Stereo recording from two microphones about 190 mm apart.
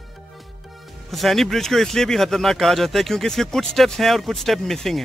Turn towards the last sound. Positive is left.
turn(degrees=0)  # may be behind; listen again after turning